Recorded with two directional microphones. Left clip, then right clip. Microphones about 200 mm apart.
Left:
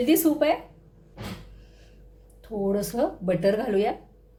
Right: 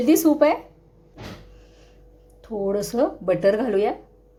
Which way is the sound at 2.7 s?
20° right (ahead or behind).